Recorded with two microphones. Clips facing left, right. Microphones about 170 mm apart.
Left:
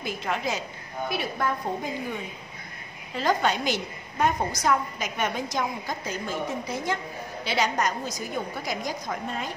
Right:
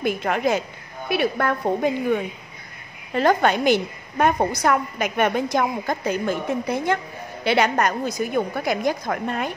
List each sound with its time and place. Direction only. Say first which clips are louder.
0.0 s a woman's voice: right 8 dB; 55° right (ahead or behind)